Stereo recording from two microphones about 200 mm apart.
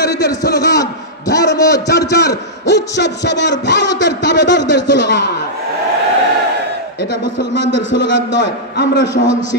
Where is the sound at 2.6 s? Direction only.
55° left (ahead or behind).